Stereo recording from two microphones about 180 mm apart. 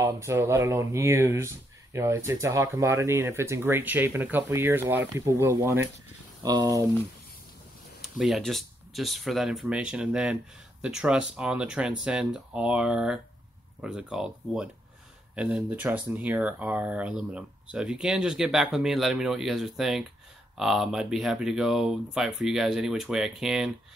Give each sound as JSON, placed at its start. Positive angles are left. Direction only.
{"t": 0.0, "sound": "speech", "side_deg": -15}
{"t": 8.0, "sound": "speech", "side_deg": 0}